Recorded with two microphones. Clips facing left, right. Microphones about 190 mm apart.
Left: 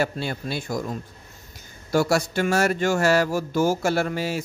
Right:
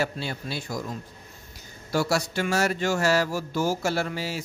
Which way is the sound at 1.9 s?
50° left (ahead or behind).